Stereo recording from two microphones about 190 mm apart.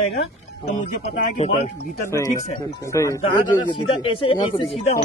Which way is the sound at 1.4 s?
35° left (ahead or behind).